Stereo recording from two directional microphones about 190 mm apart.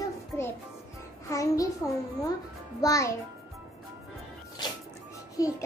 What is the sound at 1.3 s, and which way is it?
Speech, 15° left (ahead or behind).